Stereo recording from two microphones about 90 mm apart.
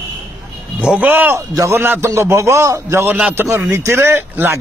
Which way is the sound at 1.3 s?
35° right (ahead or behind).